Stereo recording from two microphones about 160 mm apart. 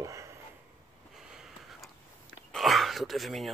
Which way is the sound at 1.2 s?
5° right (ahead or behind).